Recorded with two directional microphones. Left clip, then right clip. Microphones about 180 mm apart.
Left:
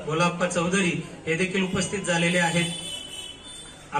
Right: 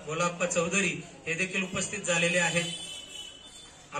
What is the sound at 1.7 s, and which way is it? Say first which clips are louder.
Speech: left 4 dB; 15° right (ahead or behind).